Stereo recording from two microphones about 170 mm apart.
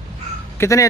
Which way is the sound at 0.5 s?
15° left (ahead or behind).